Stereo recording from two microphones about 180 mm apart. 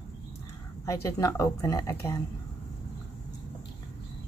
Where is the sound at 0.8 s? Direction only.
15° left (ahead or behind).